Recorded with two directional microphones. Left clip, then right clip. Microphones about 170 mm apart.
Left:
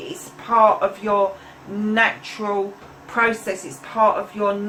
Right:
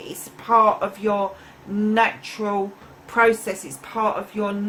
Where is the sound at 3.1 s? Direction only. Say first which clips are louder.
Right 2 dB; 65° right (ahead or behind).